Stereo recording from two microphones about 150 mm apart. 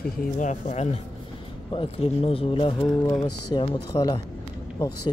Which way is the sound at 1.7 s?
35° left (ahead or behind).